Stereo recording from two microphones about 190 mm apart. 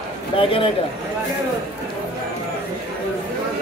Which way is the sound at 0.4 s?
25° left (ahead or behind).